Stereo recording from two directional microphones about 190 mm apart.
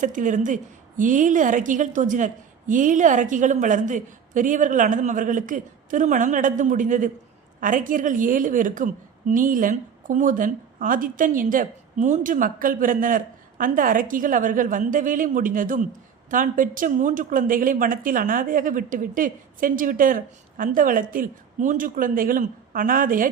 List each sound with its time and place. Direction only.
0.0 s a woman's voice: 40° right (ahead or behind)